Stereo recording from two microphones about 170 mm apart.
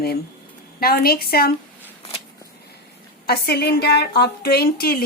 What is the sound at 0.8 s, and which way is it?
Speech, 60° left (ahead or behind).